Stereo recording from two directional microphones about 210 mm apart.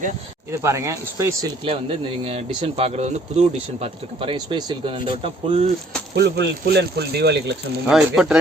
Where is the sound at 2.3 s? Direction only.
25° right (ahead or behind).